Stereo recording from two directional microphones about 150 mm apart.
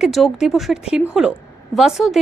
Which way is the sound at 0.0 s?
Centre (ahead or behind).